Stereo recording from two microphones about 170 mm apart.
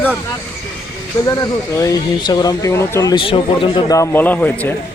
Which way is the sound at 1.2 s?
20° left (ahead or behind).